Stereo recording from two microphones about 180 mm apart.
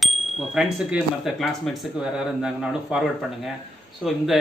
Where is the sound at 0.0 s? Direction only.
Centre (ahead or behind).